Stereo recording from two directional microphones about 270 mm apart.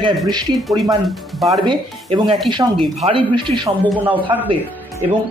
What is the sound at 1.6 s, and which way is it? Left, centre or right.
A man's voice, centre.